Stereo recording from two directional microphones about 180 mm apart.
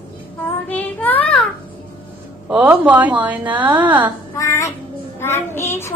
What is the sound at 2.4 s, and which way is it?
Speech, 10° right (ahead or behind).